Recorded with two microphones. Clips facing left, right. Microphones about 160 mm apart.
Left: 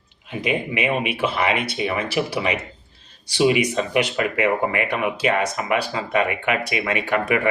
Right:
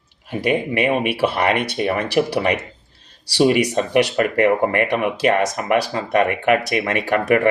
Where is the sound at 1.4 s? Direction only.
55° right (ahead or behind).